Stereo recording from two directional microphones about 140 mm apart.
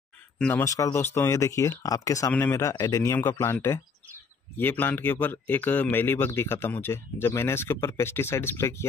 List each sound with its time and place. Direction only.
0.4 s speech: 15° left (ahead or behind)